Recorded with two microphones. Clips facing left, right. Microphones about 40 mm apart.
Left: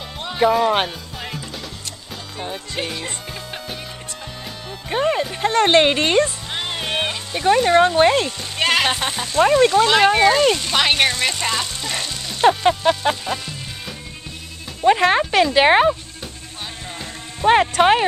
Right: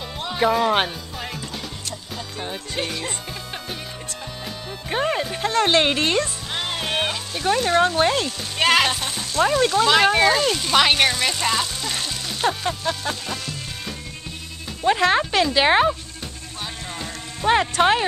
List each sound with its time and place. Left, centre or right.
0.2 s music: centre
2.3 s speech: centre
4.6 s speech: centre
9.0 s speech: left
9.5 s speech: centre
12.4 s music: left
13.1 s speech: centre
14.8 s speech: centre
17.0 s a sound: centre